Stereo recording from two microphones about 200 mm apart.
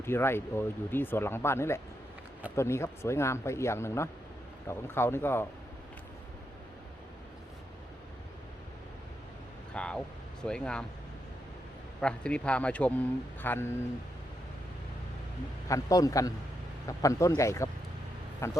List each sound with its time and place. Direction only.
0.0 s speech: 10° left (ahead or behind)
9.7 s vehicle: 5° left (ahead or behind)
10.4 s speech: 5° left (ahead or behind)
11.9 s speech: 5° left (ahead or behind)
15.7 s speech: 15° left (ahead or behind)